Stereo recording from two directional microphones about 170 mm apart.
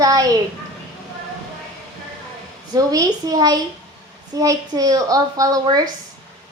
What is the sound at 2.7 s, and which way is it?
A child's voice, 20° right (ahead or behind).